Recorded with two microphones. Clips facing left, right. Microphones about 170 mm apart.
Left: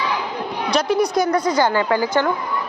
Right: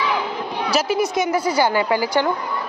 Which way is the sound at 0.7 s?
5° right (ahead or behind).